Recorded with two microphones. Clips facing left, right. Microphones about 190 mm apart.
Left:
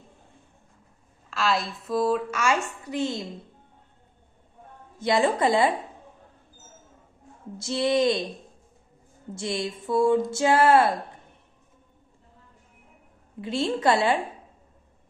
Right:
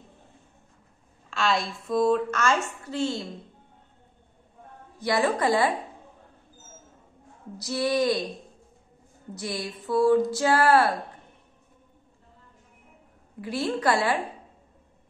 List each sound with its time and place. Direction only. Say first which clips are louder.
1.3 s a woman's voice: even; 5° left (ahead or behind); by 3.3 s 20° left (ahead or behind)
4.9 s speech: left 2 dB; 20° left (ahead or behind)
7.5 s speech: left 2 dB; 25° left (ahead or behind)
9.4 s speech: left 3 dB; 25° left (ahead or behind)
13.4 s speech: left 2 dB; 25° left (ahead or behind)